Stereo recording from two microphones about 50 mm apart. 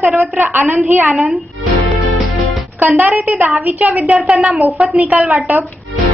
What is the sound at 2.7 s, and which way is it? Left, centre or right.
A woman's voice, right.